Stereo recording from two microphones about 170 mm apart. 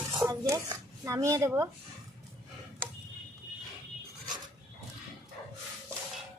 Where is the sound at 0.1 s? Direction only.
20° right (ahead or behind).